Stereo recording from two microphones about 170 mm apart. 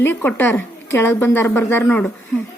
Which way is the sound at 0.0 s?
15° left (ahead or behind).